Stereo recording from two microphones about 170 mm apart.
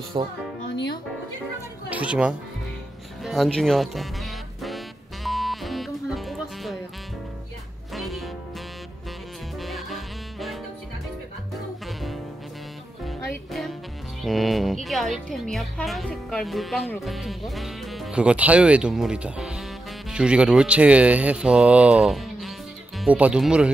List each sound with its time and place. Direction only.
0.2 s speech: 30° right (ahead or behind)
1.9 s speech: 5° right (ahead or behind)
3.3 s music: centre (ahead or behind)
7.9 s music: centre (ahead or behind)
9.6 s music: centre (ahead or behind)
13.0 s music: centre (ahead or behind)
14.2 s a woman's voice: centre (ahead or behind)